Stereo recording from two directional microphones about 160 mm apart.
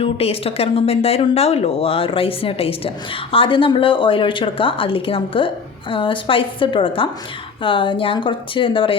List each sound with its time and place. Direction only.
0.0 s speech: 35° left (ahead or behind)